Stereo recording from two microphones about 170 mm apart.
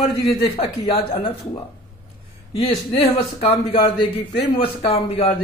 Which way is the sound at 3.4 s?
35° left (ahead or behind).